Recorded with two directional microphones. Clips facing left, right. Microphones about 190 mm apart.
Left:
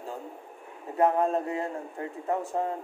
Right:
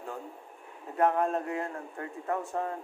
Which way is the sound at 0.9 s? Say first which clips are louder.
Left 3 dB; 30° left (ahead or behind).